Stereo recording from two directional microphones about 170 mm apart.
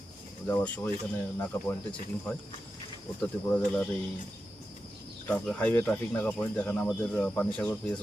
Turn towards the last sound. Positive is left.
turn(degrees=5)  # may be behind; listen again after turning